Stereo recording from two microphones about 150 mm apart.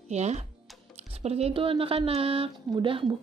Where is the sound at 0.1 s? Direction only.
50° right (ahead or behind).